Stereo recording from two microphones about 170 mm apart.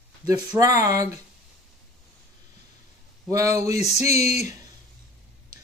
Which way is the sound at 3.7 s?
40° left (ahead or behind).